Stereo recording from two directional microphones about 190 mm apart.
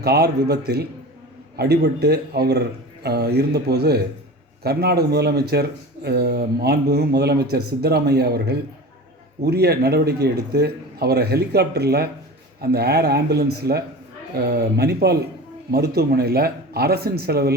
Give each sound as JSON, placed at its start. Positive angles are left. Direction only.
{"t": 0.0, "sound": "speech", "side_deg": -55}